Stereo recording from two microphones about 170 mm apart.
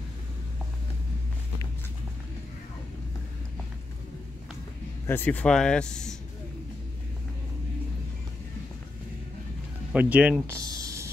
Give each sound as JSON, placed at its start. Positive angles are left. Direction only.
{"t": 5.0, "sound": "speech", "side_deg": 10}
{"t": 9.9, "sound": "speech", "side_deg": -10}
{"t": 10.5, "sound": "a sound", "side_deg": -20}